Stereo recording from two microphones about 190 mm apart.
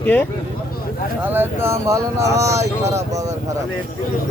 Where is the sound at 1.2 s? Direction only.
10° right (ahead or behind).